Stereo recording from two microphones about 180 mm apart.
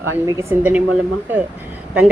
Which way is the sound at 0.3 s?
15° right (ahead or behind).